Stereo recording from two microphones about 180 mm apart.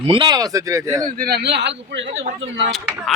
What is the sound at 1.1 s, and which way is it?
Speech, 60° right (ahead or behind).